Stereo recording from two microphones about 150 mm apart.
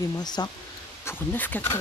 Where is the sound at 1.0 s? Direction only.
15° left (ahead or behind).